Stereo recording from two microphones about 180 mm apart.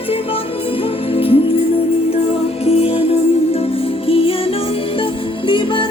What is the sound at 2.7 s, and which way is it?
Music, 30° left (ahead or behind).